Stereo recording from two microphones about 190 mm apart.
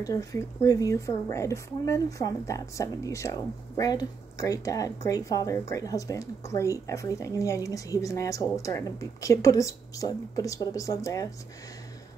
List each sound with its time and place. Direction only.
0.0 s speech: 15° left (ahead or behind)